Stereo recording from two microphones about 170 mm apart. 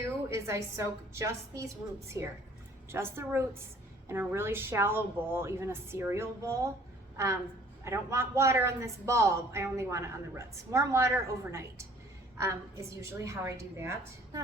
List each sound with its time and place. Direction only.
0.3 s speech: 15° right (ahead or behind)
12.4 s speech: 15° right (ahead or behind)